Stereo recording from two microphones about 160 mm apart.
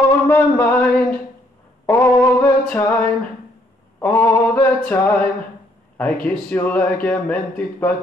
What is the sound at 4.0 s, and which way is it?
Speech, 15° left (ahead or behind).